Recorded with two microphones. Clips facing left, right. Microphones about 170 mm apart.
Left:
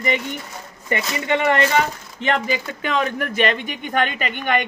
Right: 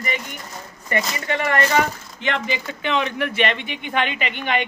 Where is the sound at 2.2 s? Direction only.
40° left (ahead or behind).